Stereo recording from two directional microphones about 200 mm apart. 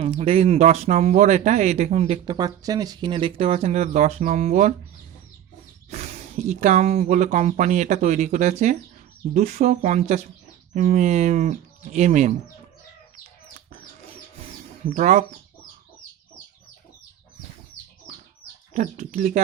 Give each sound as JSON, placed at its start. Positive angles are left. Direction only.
{"t": 0.0, "sound": "speech", "side_deg": -30}
{"t": 5.9, "sound": "speech", "side_deg": -35}
{"t": 14.5, "sound": "a sound", "side_deg": -40}
{"t": 18.7, "sound": "speech", "side_deg": -35}